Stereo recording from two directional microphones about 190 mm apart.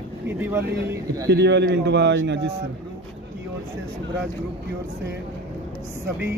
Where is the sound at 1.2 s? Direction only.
65° right (ahead or behind).